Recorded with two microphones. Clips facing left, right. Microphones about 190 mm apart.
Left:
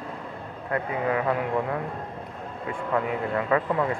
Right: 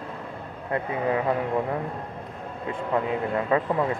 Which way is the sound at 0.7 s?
25° right (ahead or behind).